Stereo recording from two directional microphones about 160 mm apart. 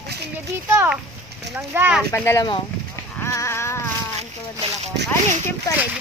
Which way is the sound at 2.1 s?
15° left (ahead or behind).